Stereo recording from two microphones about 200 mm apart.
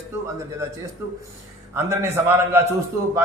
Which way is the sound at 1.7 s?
10° right (ahead or behind).